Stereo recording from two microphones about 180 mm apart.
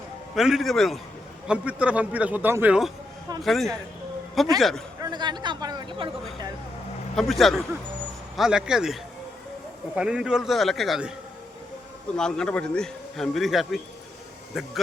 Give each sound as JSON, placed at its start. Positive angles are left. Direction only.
{"t": 0.3, "sound": "a man's voice", "side_deg": 0}
{"t": 4.9, "sound": "speech", "side_deg": -20}
{"t": 7.2, "sound": "a man's voice", "side_deg": 0}
{"t": 12.1, "sound": "a man's voice", "side_deg": 5}